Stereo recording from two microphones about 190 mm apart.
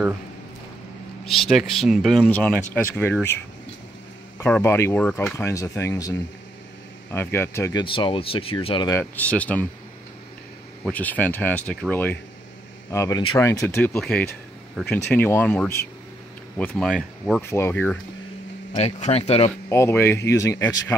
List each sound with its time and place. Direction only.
1.3 s speech: centre (ahead or behind)
4.4 s speech: 10° left (ahead or behind)
7.8 s speech: 25° left (ahead or behind)
8.9 s speech: 10° left (ahead or behind)
10.8 s speech: 10° left (ahead or behind)
18.8 s speech: 35° left (ahead or behind)
19.7 s speech: 15° left (ahead or behind)